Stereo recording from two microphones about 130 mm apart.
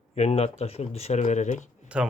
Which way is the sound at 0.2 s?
55° left (ahead or behind).